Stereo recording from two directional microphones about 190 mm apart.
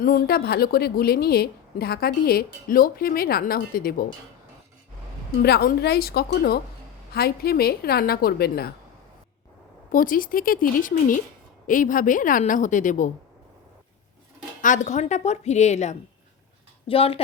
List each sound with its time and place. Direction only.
0.0 s a woman's voice: 50° left (ahead or behind)
5.4 s a woman's voice: 55° left (ahead or behind)
9.9 s a woman's voice: 45° left (ahead or behind)
14.6 s a woman's voice: 40° left (ahead or behind)